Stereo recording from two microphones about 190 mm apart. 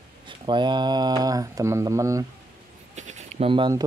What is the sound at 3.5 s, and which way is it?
Speech, 25° right (ahead or behind).